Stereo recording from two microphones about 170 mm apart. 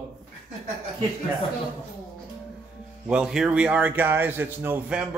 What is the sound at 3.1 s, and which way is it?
A man's voice, 5° right (ahead or behind).